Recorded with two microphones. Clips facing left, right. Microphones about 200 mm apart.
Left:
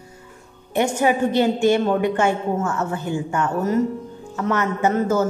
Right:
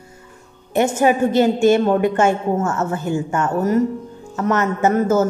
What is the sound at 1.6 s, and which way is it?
A woman's voice, 45° right (ahead or behind).